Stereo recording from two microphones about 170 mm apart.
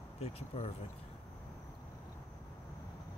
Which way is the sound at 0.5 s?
35° left (ahead or behind).